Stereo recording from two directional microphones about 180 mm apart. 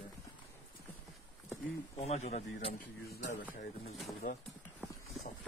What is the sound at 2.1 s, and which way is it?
Speech, 40° left (ahead or behind).